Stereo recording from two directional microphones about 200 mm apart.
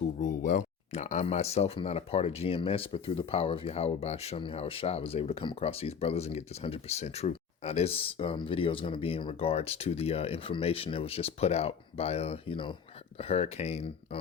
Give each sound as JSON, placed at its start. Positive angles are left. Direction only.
{"t": 0.2, "sound": "speech", "side_deg": 40}